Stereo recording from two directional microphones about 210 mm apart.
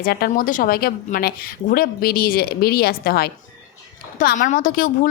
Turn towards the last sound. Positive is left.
turn(degrees=40)  # may be behind; listen again after turning